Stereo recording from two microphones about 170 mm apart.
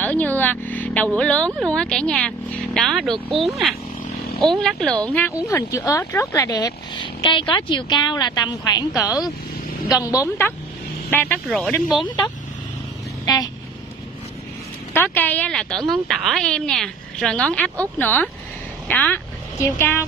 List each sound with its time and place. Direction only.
0.0 s a sound: 10° left (ahead or behind)
0.4 s speech: 10° left (ahead or behind)
11.4 s speech: centre (ahead or behind)
13.2 s vehicle: 20° left (ahead or behind)
15.0 s speech: 10° left (ahead or behind)